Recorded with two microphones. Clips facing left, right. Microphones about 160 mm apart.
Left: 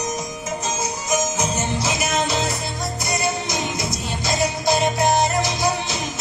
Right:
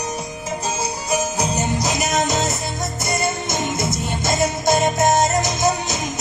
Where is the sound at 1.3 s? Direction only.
35° right (ahead or behind).